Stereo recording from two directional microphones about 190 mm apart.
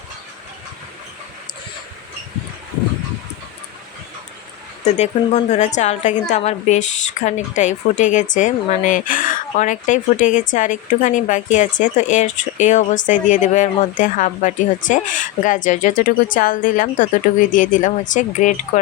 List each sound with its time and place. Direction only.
4.9 s a woman's voice: 40° left (ahead or behind)